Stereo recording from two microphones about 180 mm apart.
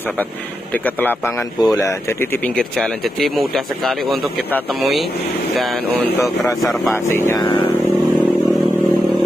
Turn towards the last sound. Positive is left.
turn(degrees=20)  # may be behind; listen again after turning